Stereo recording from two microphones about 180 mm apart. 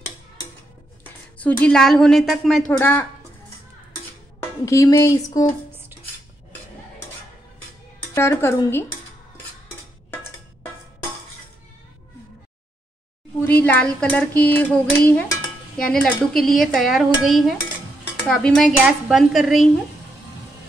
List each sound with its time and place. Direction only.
1.4 s speech: 5° left (ahead or behind)
2.7 s dishes: 10° left (ahead or behind)
4.4 s speech: 15° left (ahead or behind)
8.1 s dishes: 15° left (ahead or behind)
13.4 s dishes: 10° left (ahead or behind)
15.8 s speech: 5° left (ahead or behind)